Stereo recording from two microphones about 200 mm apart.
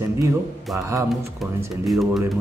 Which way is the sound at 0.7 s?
15° right (ahead or behind).